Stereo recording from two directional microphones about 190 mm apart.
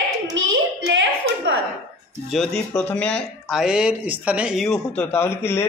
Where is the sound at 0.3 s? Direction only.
80° right.